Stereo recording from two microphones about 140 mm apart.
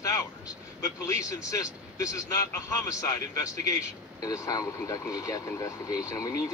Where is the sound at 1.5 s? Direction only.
25° left (ahead or behind).